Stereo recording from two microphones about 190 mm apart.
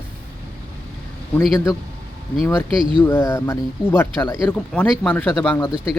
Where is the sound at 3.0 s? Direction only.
10° left (ahead or behind).